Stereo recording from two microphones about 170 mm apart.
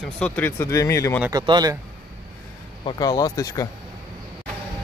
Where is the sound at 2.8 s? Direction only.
20° left (ahead or behind).